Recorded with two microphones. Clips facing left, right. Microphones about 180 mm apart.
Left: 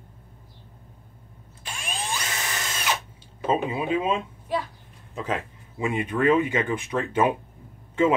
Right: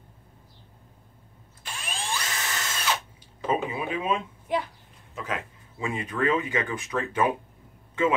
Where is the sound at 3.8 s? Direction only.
25° left (ahead or behind).